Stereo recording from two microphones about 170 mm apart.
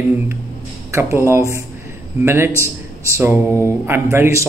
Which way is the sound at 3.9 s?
15° right (ahead or behind).